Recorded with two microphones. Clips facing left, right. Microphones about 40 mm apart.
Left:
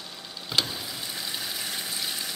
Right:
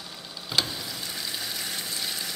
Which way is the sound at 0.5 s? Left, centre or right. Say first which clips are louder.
Even; centre.